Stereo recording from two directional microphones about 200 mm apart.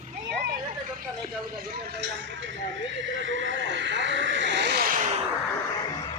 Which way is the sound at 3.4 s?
65° right (ahead or behind).